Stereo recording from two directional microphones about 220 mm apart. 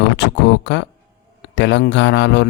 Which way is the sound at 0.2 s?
50° left (ahead or behind).